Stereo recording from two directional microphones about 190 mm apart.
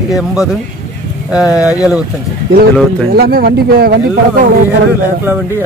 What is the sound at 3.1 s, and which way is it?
Speech, 55° right (ahead or behind).